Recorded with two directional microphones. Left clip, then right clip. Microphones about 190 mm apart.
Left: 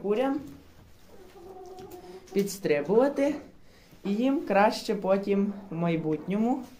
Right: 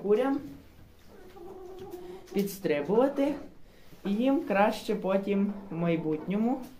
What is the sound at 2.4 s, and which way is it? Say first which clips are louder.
Speech: left 2 dB; 20° left (ahead or behind).